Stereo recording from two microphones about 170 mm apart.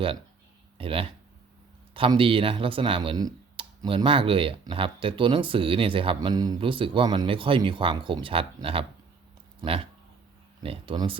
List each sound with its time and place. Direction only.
0.8 s speech: 35° right (ahead or behind)
10.6 s speech: 30° right (ahead or behind)